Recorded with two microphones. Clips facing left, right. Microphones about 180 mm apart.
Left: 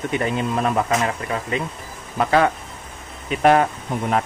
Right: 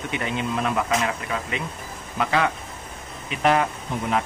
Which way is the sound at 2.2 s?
40° left (ahead or behind).